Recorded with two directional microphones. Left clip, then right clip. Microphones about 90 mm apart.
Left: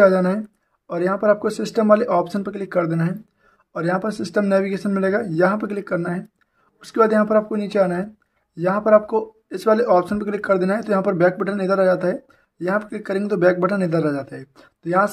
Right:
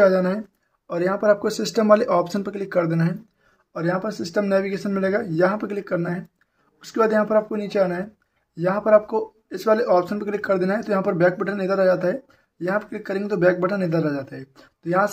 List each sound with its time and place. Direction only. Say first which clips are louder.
0.0 s speech: left 2 dB; 35° left (ahead or behind); by 3.2 s 20° left (ahead or behind)
3.7 s speech: left 2 dB; 40° left (ahead or behind)